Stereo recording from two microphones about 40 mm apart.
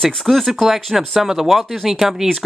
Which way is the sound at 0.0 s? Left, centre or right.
Centre.